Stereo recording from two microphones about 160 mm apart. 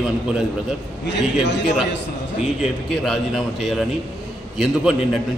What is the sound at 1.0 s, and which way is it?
Speech, 90° left.